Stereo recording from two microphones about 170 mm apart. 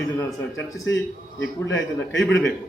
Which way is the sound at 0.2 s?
20° left (ahead or behind).